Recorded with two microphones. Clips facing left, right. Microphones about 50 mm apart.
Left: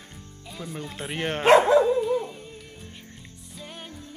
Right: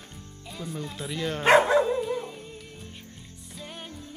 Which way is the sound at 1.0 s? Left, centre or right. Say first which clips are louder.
Left 3 dB; left.